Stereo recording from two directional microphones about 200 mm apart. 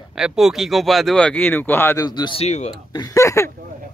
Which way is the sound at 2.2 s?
30° left (ahead or behind).